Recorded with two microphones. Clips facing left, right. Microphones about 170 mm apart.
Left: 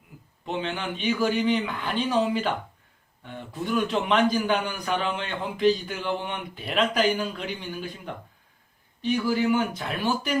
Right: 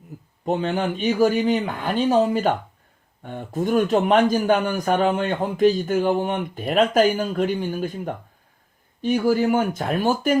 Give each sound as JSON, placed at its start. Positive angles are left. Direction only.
{"t": 0.4, "sound": "a man's voice", "side_deg": -45}